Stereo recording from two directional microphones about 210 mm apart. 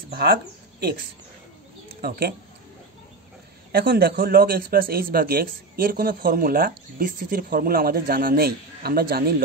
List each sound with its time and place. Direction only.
0.1 s speech: 50° right (ahead or behind)
2.0 s speech: 50° right (ahead or behind)
3.7 s speech: 50° right (ahead or behind)